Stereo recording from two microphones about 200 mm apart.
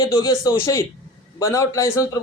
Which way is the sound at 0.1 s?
20° left (ahead or behind).